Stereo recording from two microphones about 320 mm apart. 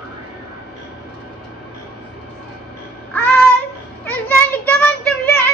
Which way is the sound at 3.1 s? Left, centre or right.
Centre.